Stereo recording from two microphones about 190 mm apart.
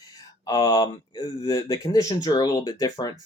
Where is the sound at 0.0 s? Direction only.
20° left (ahead or behind).